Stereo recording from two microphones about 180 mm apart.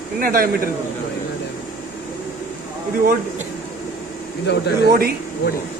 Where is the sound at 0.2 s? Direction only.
55° right (ahead or behind).